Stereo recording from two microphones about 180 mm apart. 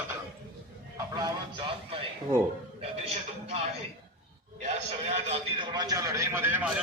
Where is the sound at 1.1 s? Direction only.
25° right (ahead or behind).